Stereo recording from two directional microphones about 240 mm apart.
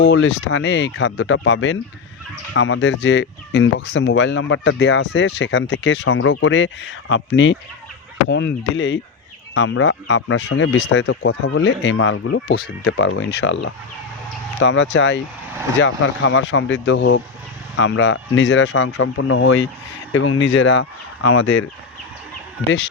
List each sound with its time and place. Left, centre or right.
0.0 s speech: left